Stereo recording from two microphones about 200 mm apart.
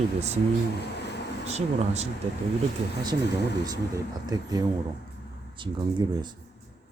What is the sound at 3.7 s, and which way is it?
Speech, 20° right (ahead or behind).